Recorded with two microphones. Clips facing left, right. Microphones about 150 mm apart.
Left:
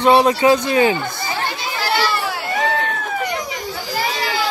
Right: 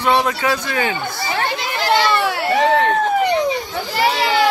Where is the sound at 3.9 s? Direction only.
70° right (ahead or behind).